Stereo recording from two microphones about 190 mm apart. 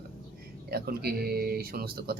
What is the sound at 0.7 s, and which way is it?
Speech, 55° right (ahead or behind).